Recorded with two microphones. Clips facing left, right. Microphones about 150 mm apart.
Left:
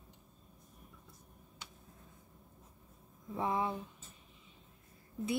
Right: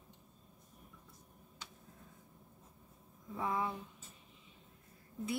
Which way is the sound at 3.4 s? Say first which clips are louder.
Left 3 dB; 25° left (ahead or behind).